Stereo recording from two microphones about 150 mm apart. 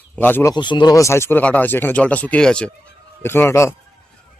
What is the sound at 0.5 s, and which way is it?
Speech, 30° left (ahead or behind).